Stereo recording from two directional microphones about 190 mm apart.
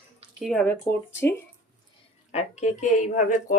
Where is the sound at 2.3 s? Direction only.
35° left (ahead or behind).